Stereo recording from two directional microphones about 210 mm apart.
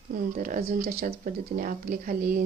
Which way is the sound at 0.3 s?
40° right (ahead or behind).